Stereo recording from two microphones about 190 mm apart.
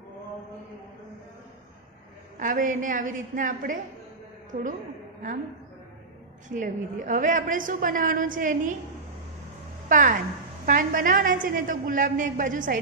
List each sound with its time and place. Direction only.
2.3 s a woman's voice: 45° right (ahead or behind)
6.5 s a woman's voice: 40° right (ahead or behind)
9.8 s a woman's voice: 45° right (ahead or behind)